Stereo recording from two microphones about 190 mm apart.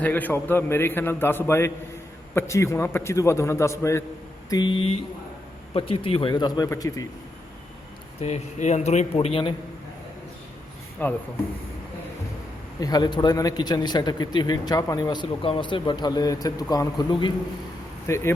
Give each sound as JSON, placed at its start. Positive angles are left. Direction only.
{"t": 0.0, "sound": "a man's voice", "side_deg": 10}
{"t": 8.2, "sound": "speech", "side_deg": 35}
{"t": 11.0, "sound": "a man's voice", "side_deg": 10}
{"t": 12.8, "sound": "a man's voice", "side_deg": 20}
{"t": 18.1, "sound": "a man's voice", "side_deg": 15}